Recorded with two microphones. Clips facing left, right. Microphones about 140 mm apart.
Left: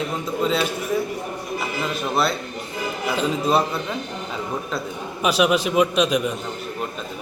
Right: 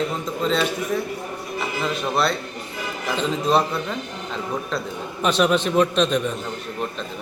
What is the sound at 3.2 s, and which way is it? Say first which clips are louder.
A man's voice: right 1 dB; 5° left (ahead or behind).